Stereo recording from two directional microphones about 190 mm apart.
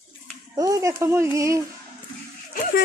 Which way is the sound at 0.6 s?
15° right (ahead or behind).